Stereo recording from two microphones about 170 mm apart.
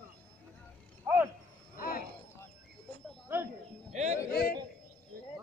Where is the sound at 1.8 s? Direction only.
55° left (ahead or behind).